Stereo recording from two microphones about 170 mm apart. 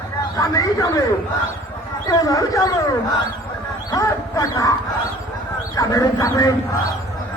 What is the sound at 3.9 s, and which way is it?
Speech, 20° left (ahead or behind).